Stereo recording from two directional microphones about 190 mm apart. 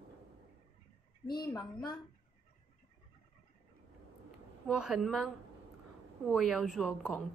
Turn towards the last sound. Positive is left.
turn(degrees=0)  # may be behind; listen again after turning